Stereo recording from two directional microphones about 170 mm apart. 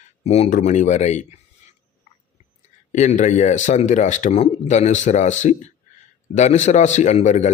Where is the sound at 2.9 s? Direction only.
45° left (ahead or behind).